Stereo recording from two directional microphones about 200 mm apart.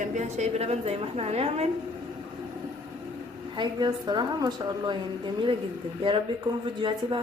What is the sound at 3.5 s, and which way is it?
A woman's voice, 20° right (ahead or behind).